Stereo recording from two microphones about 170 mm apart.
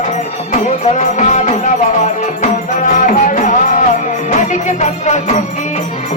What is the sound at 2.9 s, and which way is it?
Music, 50° left (ahead or behind).